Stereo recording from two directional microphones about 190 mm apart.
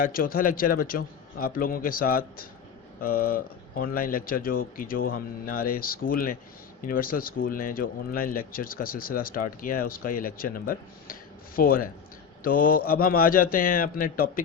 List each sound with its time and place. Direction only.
0.0 s speech: 50° left (ahead or behind)